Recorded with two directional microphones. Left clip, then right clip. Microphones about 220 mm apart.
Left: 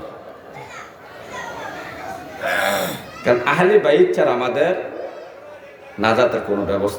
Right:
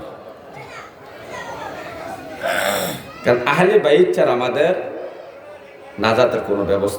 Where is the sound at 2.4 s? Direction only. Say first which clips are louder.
Even; 20° right (ahead or behind).